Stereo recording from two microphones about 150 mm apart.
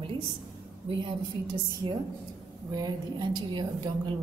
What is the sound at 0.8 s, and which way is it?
Speech, 35° right (ahead or behind).